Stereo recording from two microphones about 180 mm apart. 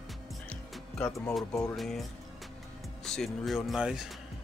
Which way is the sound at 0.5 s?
10° left (ahead or behind).